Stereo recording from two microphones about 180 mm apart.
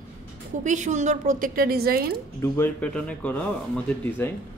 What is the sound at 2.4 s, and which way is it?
Speech, 10° left (ahead or behind).